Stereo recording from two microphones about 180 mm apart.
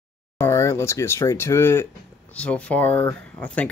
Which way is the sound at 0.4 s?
15° left (ahead or behind).